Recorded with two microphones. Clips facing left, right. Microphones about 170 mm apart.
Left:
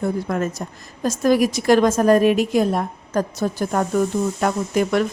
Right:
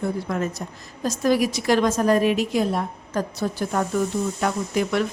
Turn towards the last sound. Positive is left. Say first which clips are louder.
# left 3 dB
turn(degrees=45)  # may be behind; listen again after turning